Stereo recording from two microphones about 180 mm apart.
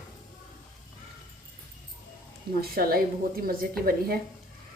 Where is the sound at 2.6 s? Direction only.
55° right (ahead or behind).